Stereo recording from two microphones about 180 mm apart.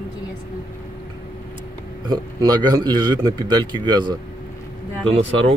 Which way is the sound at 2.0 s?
20° right (ahead or behind).